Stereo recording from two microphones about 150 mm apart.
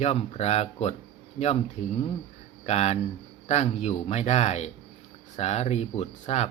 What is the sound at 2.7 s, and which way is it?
Speech, 45° left (ahead or behind).